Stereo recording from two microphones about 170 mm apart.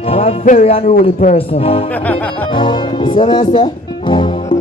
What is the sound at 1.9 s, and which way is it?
Music, 10° left (ahead or behind).